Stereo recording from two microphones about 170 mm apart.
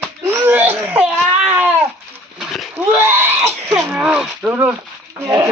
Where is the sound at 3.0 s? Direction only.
15° right (ahead or behind).